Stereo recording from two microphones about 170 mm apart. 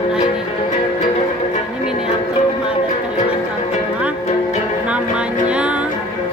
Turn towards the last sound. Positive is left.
turn(degrees=-5)  # may be behind; listen again after turning